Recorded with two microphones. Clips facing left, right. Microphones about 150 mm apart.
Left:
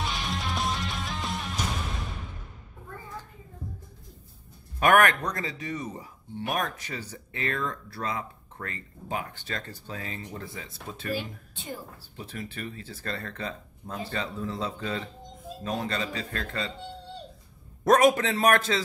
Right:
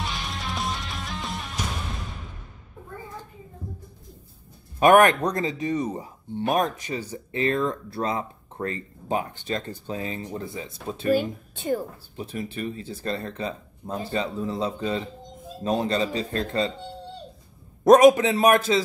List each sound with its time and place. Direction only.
0.0 s music: centre (ahead or behind)
4.7 s speech: 25° right (ahead or behind)
11.1 s speech: 50° right (ahead or behind)
12.2 s speech: 20° right (ahead or behind)
17.8 s a man's voice: 15° right (ahead or behind)